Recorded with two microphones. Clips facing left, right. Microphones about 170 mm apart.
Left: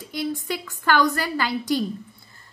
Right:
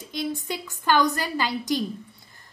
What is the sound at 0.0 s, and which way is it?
A woman's voice, 20° right (ahead or behind).